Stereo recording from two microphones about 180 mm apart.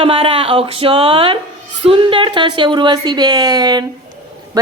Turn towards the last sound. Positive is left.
turn(degrees=-20)  # may be behind; listen again after turning